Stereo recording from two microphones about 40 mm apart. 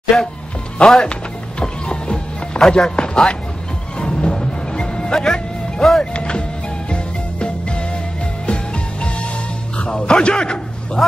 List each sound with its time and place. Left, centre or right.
0.1 s speech: centre
1.6 s music: centre
6.1 s power windows: left
6.9 s music: left
9.8 s speech: left
11.0 s speech: centre